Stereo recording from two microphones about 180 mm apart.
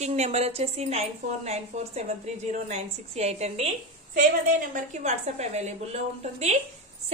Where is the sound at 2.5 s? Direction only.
35° right (ahead or behind).